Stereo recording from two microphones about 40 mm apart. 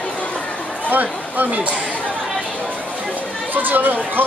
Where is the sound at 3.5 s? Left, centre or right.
Right.